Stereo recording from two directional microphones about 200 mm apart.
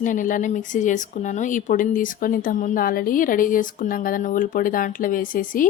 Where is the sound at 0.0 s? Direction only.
40° left (ahead or behind).